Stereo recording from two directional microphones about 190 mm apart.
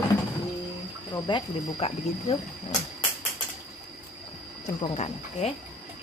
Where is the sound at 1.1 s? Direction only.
25° left (ahead or behind).